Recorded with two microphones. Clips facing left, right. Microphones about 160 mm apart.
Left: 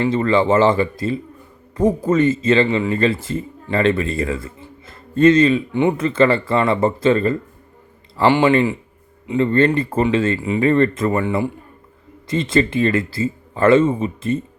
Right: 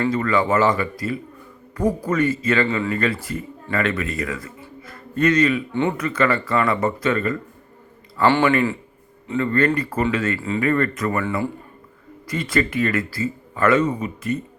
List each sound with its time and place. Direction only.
0.0 s speech: 25° left (ahead or behind)
8.3 s speech: 15° left (ahead or behind)